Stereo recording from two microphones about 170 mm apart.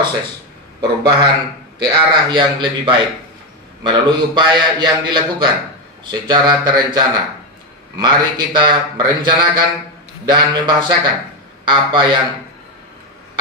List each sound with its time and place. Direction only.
0.7 s a man's voice: 25° right (ahead or behind)